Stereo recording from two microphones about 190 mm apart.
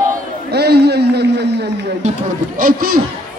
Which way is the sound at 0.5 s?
60° right (ahead or behind).